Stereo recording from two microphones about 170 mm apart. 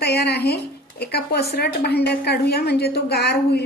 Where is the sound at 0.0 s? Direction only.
70° left (ahead or behind).